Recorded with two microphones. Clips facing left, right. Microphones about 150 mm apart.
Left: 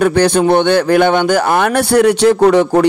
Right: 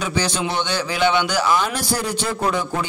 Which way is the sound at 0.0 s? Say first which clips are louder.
Left 12 dB; 55° left (ahead or behind).